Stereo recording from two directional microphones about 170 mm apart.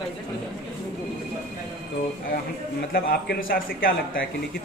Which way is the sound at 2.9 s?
60° left (ahead or behind).